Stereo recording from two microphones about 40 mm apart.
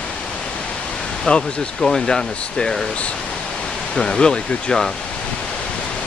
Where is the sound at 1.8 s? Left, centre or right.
Centre.